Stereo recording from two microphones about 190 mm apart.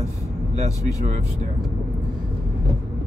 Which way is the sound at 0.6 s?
35° right (ahead or behind).